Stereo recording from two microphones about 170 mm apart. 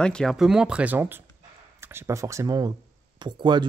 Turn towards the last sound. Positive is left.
turn(degrees=-25)  # may be behind; listen again after turning